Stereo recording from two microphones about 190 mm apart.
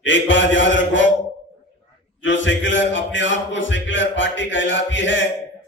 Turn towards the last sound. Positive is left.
turn(degrees=75)  # may be behind; listen again after turning